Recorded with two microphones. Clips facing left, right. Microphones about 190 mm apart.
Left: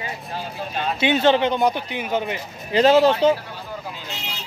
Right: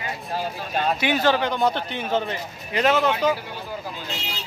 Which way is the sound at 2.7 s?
30° left (ahead or behind).